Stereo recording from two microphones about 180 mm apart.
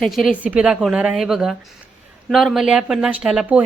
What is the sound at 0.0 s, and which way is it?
A woman's voice, centre (ahead or behind).